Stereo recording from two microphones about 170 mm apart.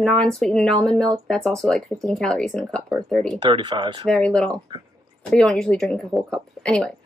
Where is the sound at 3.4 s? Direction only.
25° right (ahead or behind).